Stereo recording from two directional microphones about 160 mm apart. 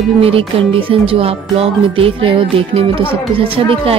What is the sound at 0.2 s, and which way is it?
Speech, 35° right (ahead or behind).